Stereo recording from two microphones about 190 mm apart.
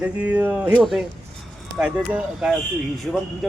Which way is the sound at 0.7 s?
Centre (ahead or behind).